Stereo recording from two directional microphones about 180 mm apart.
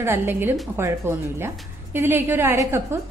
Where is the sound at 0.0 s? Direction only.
15° right (ahead or behind).